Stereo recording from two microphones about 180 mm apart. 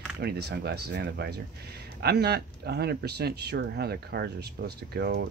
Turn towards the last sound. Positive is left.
turn(degrees=-60)  # may be behind; listen again after turning